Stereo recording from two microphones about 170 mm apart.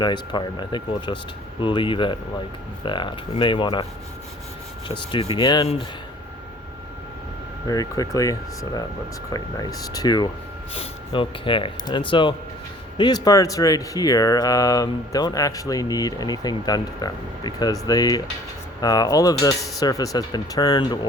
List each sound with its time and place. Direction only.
0.0 s speech: 25° left (ahead or behind)
5.4 s speech: 25° left (ahead or behind)
7.7 s speech: 20° left (ahead or behind)